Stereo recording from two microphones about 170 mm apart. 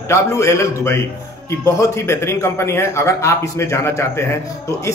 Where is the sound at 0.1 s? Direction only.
15° left (ahead or behind).